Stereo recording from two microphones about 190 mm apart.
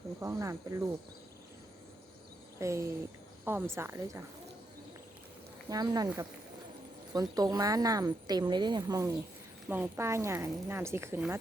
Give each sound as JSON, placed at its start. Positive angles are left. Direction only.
{"t": 0.2, "sound": "speech", "side_deg": -15}
{"t": 2.6, "sound": "speech", "side_deg": -15}
{"t": 5.6, "sound": "speech", "side_deg": -20}